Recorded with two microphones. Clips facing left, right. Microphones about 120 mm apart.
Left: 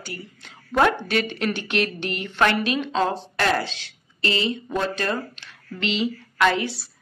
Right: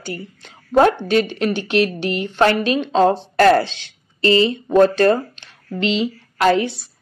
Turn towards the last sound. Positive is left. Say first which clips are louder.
# right 7 dB
turn(degrees=-50)  # may be behind; listen again after turning